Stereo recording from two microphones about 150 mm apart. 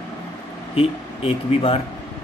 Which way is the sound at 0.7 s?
40° left (ahead or behind).